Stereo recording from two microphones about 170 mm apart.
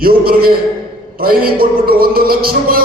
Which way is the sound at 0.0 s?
60° right (ahead or behind).